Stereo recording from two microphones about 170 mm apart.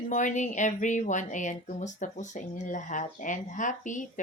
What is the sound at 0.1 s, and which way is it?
Speech, 45° left (ahead or behind).